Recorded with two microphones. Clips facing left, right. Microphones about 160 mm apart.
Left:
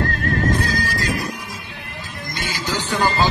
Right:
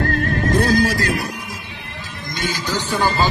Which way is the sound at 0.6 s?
55° right (ahead or behind).